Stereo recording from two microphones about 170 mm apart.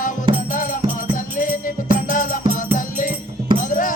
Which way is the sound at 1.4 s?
50° left (ahead or behind).